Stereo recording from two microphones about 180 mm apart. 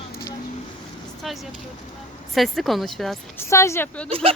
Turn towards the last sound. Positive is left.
turn(degrees=10)  # may be behind; listen again after turning